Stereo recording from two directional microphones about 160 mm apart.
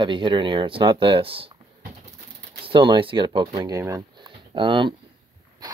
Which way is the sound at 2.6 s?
30° right (ahead or behind).